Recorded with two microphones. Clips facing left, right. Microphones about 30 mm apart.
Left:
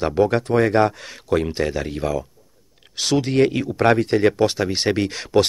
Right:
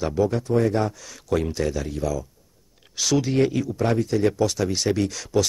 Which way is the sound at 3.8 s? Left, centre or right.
Left.